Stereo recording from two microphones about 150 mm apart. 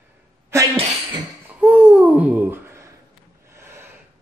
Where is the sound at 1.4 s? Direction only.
10° right (ahead or behind).